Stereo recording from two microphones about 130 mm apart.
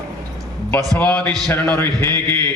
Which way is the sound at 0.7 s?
10° left (ahead or behind).